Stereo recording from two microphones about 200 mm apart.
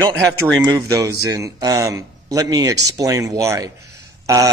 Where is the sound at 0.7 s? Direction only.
15° right (ahead or behind).